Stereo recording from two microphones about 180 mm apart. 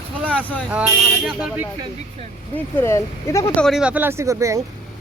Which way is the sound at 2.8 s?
15° left (ahead or behind).